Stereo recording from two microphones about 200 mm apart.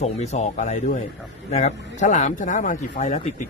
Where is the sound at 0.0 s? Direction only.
35° left (ahead or behind).